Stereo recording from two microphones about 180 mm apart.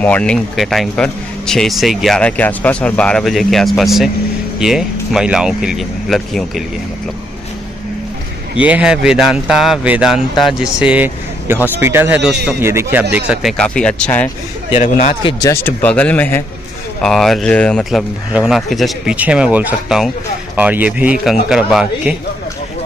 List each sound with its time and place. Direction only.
0.0 s speech: 5° left (ahead or behind)
8.5 s speech: 10° right (ahead or behind)
14.7 s a man's voice: 45° left (ahead or behind)
15.2 s speech: 15° left (ahead or behind); by 22.1 s 5° right (ahead or behind)